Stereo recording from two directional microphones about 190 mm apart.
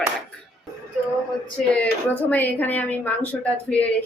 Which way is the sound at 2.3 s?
10° left (ahead or behind).